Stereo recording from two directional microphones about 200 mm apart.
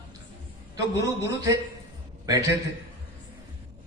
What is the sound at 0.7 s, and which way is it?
Speech, 15° right (ahead or behind).